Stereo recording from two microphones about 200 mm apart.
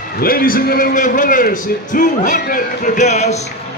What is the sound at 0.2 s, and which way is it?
A man's voice, 45° left (ahead or behind).